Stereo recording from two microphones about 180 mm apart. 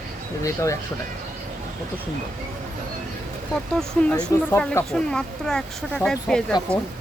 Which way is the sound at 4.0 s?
5° left (ahead or behind).